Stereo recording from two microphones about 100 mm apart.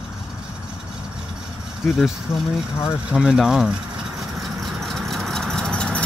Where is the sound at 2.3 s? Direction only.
25° left (ahead or behind).